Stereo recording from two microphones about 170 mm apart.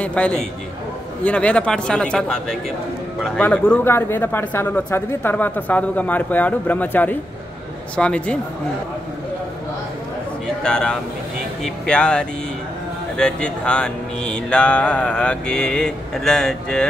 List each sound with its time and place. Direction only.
0.0 s speech: 5° left (ahead or behind)
10.6 s speech: 5° left (ahead or behind)